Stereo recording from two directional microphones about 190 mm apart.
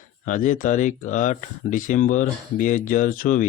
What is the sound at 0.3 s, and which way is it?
Speech, 45° left (ahead or behind).